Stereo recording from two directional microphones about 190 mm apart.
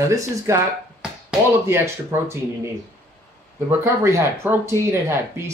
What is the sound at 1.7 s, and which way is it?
Speech, 15° right (ahead or behind).